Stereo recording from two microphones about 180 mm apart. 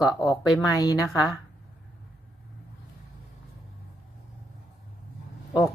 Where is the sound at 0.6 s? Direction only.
20° left (ahead or behind).